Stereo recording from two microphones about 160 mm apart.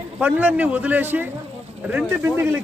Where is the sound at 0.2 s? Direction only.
10° right (ahead or behind).